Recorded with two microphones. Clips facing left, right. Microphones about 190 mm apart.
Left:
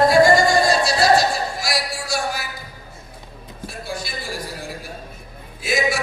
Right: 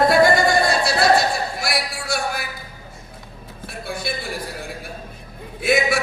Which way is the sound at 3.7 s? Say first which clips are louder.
Right 3 dB; 60° right (ahead or behind).